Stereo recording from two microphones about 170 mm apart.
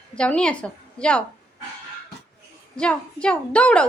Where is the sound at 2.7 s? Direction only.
5° left (ahead or behind).